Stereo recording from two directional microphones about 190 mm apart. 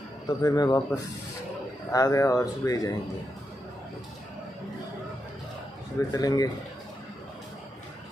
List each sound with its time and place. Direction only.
0.4 s speech: 20° left (ahead or behind)
6.1 s speech: 20° left (ahead or behind)